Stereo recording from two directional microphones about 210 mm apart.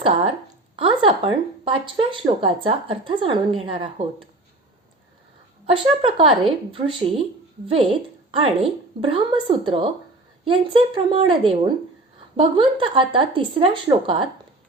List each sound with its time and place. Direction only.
0.0 s a sound: 25° right (ahead or behind)
0.8 s speech: 25° right (ahead or behind)
5.6 s speech: 25° right (ahead or behind)